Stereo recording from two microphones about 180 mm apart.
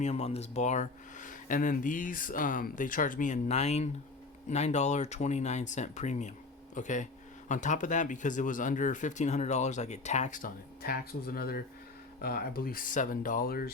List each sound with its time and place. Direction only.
0.0 s speech: 35° left (ahead or behind); by 13.7 s 55° left (ahead or behind)